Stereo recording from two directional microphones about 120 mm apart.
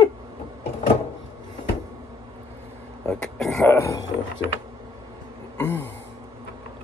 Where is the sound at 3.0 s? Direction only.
5° left (ahead or behind).